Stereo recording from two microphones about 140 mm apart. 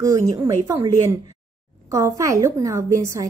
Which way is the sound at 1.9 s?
25° right (ahead or behind).